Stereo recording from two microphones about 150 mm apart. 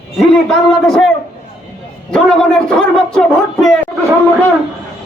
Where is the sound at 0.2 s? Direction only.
5° left (ahead or behind).